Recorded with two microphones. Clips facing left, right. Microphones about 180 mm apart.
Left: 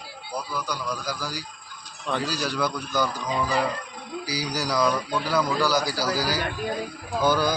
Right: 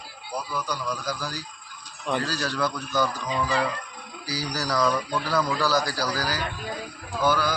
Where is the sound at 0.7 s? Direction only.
10° left (ahead or behind).